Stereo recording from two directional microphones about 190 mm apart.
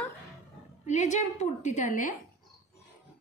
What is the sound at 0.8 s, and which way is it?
A woman's voice, 40° left (ahead or behind).